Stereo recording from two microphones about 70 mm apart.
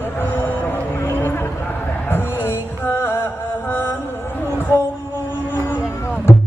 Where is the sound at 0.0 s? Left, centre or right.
Left.